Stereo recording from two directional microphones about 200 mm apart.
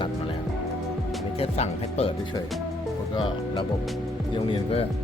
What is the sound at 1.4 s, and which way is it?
Speech, 30° left (ahead or behind).